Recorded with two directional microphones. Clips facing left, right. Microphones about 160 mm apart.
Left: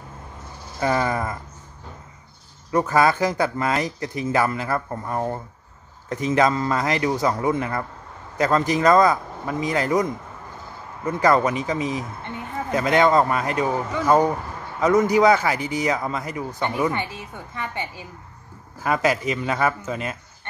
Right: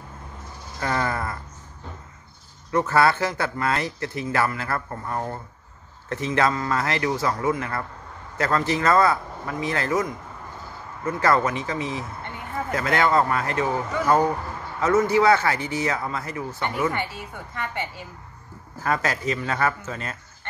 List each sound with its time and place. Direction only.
0.7 s speech: 15° left (ahead or behind)
2.7 s a man's voice: 15° left (ahead or behind)
11.1 s speech: 15° left (ahead or behind)
18.8 s speech: 10° left (ahead or behind)